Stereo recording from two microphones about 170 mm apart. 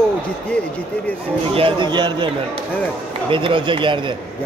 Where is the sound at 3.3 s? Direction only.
30° right (ahead or behind).